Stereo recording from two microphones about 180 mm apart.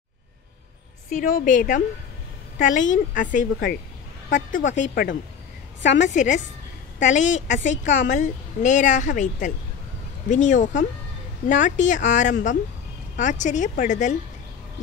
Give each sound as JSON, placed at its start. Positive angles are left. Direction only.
{"t": 1.1, "sound": "a woman's voice", "side_deg": 50}
{"t": 4.6, "sound": "a woman's voice", "side_deg": 90}
{"t": 6.0, "sound": "a woman's voice", "side_deg": 45}